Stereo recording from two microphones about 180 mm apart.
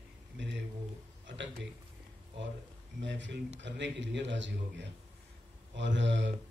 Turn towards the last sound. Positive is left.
turn(degrees=-85)